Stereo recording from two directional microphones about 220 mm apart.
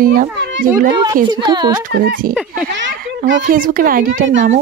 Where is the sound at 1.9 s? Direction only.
40° right (ahead or behind).